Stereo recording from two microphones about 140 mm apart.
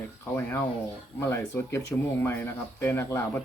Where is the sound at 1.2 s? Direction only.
15° left (ahead or behind).